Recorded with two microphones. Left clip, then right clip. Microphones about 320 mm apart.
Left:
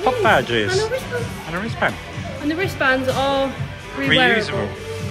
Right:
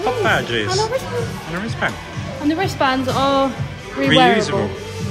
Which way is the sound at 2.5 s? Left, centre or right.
Right.